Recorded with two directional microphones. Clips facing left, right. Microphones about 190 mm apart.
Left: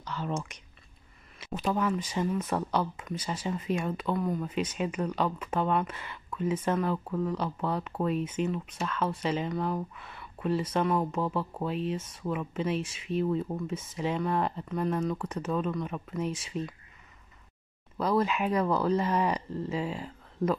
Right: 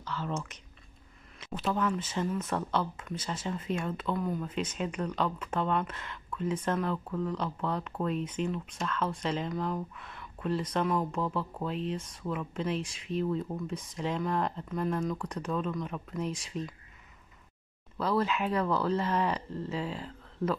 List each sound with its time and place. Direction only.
0.0 s speech: 15° left (ahead or behind)
17.9 s speech: 15° left (ahead or behind)